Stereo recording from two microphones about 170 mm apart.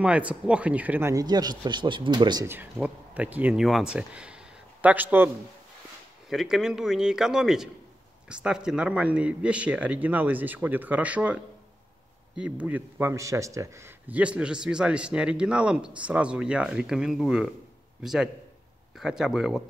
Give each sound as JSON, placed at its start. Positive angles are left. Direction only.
{"t": 0.0, "sound": "speech", "side_deg": -5}
{"t": 2.4, "sound": "a man's voice", "side_deg": -10}
{"t": 12.4, "sound": "a man's voice", "side_deg": -5}